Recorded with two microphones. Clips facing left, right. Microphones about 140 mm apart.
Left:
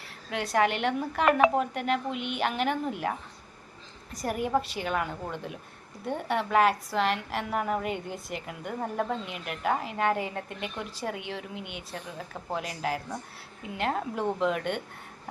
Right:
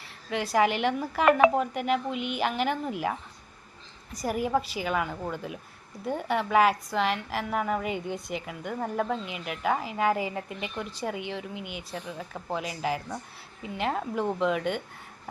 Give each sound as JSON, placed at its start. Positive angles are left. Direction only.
{"t": 0.3, "sound": "a woman's voice", "side_deg": 0}